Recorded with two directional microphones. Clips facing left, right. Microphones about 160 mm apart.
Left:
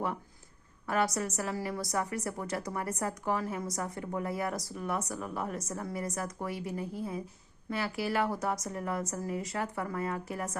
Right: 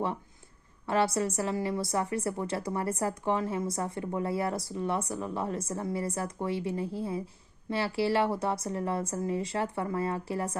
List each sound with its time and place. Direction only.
0.9 s a woman's voice: 25° right (ahead or behind)